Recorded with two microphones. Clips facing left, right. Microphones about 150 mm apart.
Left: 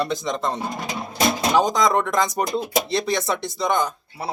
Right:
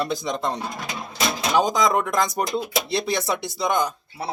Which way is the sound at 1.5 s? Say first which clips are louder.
Even; 5° right (ahead or behind).